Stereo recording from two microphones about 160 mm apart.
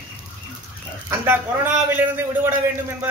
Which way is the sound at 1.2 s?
15° right (ahead or behind).